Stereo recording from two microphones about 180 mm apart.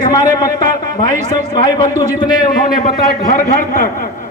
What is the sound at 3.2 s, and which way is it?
Speech, 45° left (ahead or behind).